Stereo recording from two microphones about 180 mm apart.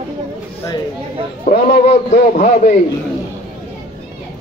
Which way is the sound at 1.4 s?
40° left (ahead or behind).